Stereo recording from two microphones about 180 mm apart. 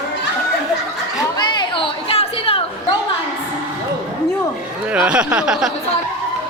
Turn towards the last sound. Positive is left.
turn(degrees=-5)  # may be behind; listen again after turning